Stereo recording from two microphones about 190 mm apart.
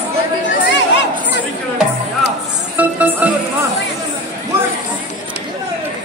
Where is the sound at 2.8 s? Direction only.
10° right (ahead or behind).